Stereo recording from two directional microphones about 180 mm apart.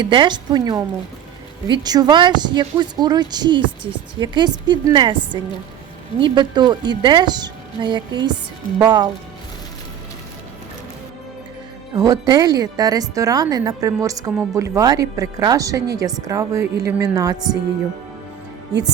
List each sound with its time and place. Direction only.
0.0 s a woman's voice: 25° right (ahead or behind)
11.9 s a woman's voice: 20° right (ahead or behind)